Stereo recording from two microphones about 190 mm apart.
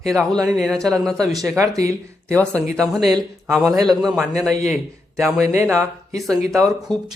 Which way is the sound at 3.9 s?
Centre (ahead or behind).